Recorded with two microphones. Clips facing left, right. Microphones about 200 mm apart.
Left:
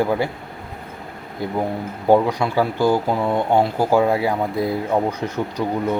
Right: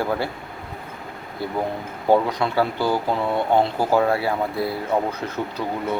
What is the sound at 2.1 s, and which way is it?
Speech, 10° left (ahead or behind).